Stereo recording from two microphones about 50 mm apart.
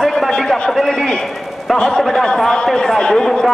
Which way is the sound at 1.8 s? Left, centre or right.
Centre.